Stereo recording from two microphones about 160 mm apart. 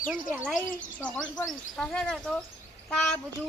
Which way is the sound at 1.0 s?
10° left (ahead or behind).